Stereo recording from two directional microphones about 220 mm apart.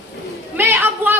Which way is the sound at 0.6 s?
10° right (ahead or behind).